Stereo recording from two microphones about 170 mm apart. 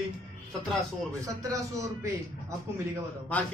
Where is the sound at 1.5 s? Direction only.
20° right (ahead or behind).